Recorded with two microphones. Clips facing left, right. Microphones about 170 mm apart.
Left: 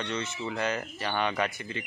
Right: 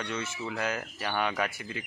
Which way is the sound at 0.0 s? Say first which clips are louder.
Left 2 dB; 5° right (ahead or behind).